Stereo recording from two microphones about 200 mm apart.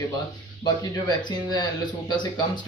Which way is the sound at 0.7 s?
20° left (ahead or behind).